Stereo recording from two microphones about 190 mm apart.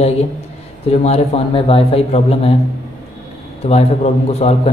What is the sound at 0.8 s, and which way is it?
A man's voice, 35° left (ahead or behind).